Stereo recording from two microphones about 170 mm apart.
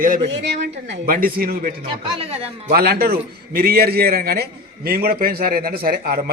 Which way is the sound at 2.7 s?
65° right (ahead or behind).